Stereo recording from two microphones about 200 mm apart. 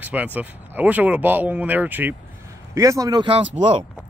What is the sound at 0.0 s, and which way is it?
Speech, 10° right (ahead or behind).